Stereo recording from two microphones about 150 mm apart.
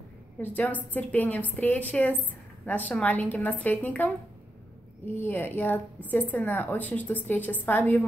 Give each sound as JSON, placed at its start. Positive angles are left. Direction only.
{"t": 0.4, "sound": "a woman's voice", "side_deg": 10}